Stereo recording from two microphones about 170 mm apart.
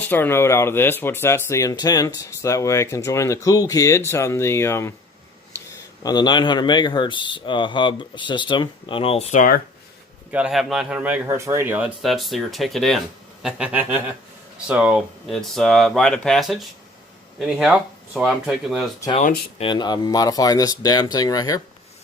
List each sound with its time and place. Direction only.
0.0 s speech: 10° left (ahead or behind); by 9.6 s 45° left (ahead or behind)
10.3 s speech: 5° right (ahead or behind)
13.4 s a sound: 5° right (ahead or behind)
14.7 s speech: 5° right (ahead or behind)
19.6 s speech: 25° left (ahead or behind)